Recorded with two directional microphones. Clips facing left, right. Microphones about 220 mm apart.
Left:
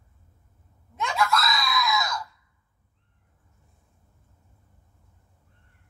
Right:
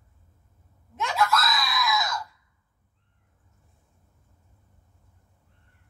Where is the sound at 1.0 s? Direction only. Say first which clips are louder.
Even; centre (ahead or behind).